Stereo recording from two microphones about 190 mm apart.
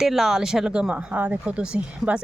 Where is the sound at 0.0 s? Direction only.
Centre (ahead or behind).